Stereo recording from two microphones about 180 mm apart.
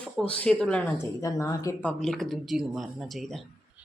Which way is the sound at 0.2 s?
5° left (ahead or behind).